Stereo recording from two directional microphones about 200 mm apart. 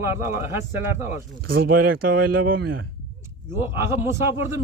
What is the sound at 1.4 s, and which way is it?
Speech, 50° right (ahead or behind).